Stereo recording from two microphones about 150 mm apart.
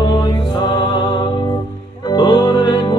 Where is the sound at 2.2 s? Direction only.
30° left (ahead or behind).